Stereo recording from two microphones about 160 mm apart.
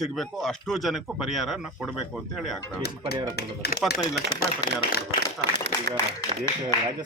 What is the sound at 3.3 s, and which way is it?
Speech, 90° left.